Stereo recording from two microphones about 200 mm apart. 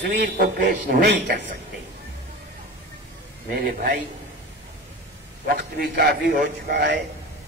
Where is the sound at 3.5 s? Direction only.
50° right (ahead or behind).